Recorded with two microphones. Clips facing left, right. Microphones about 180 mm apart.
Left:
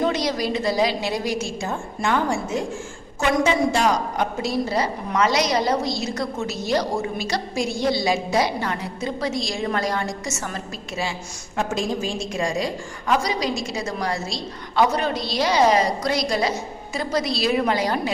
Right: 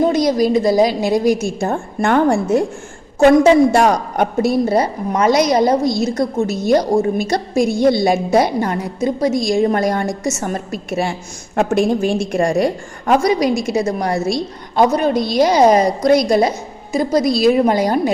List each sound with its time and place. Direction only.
0.1 s a woman's voice: 45° right (ahead or behind); by 2.6 s 60° right (ahead or behind)
3.7 s a woman's voice: 60° right (ahead or behind)